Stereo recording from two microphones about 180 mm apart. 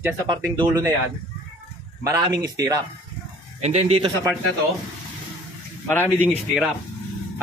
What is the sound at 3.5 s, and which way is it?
Speech, 40° right (ahead or behind).